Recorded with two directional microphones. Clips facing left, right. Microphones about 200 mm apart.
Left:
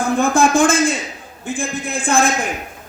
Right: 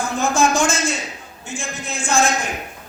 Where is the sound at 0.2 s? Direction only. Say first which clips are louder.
Left 3 dB; 55° left (ahead or behind).